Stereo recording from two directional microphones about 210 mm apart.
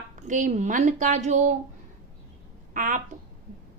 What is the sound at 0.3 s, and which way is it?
A woman's voice, 35° right (ahead or behind).